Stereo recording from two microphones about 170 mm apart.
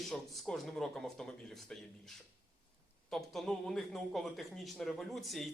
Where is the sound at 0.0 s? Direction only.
Centre (ahead or behind).